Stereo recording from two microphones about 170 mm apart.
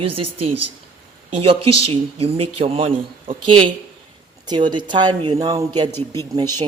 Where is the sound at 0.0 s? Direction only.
35° right (ahead or behind).